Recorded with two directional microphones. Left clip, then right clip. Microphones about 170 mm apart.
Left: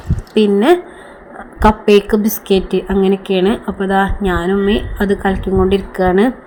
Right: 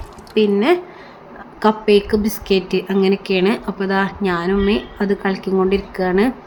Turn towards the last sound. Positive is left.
turn(degrees=15)  # may be behind; listen again after turning